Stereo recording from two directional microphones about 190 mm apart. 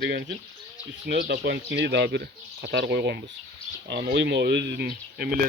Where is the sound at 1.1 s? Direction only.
60° right (ahead or behind).